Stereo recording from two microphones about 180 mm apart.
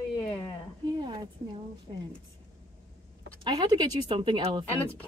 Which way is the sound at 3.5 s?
25° right (ahead or behind).